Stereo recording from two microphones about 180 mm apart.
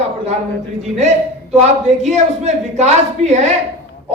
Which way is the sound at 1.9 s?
40° right (ahead or behind).